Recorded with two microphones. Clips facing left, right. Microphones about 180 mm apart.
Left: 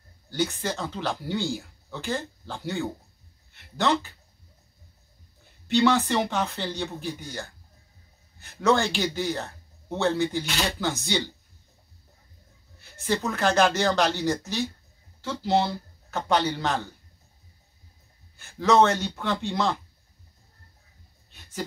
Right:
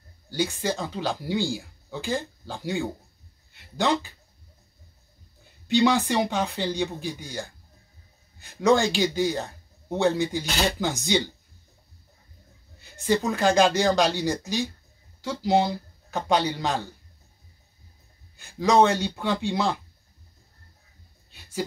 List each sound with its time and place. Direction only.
0.3 s speech: 10° right (ahead or behind)
3.5 s a sound: 15° right (ahead or behind)
5.7 s speech: 15° right (ahead or behind)
12.9 s speech: 15° right (ahead or behind)
18.4 s speech: 15° right (ahead or behind)
21.3 s a sound: 10° right (ahead or behind)